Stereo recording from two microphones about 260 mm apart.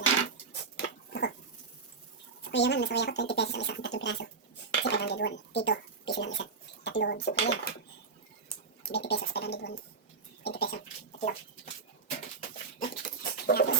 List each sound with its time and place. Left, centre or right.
0.6 s a sound: left
2.4 s speech: left
8.8 s speech: left
10.4 s goat: left
11.2 s dog: left
12.8 s dog: left